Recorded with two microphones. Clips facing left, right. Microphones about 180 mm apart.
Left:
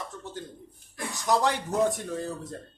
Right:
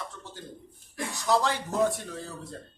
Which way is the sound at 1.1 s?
20° left (ahead or behind).